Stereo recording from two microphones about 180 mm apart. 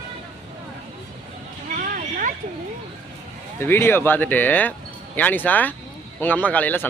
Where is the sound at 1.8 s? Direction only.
50° right (ahead or behind).